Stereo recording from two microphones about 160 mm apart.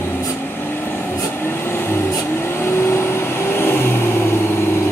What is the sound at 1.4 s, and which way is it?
Vehicle, 15° left (ahead or behind).